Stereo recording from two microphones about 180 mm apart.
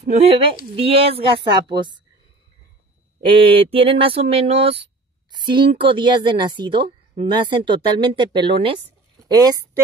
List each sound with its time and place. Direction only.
0.0 s speech: 35° right (ahead or behind)
3.3 s a woman's voice: 30° right (ahead or behind)